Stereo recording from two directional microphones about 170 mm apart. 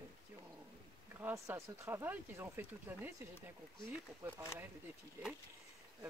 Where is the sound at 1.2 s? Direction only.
15° right (ahead or behind).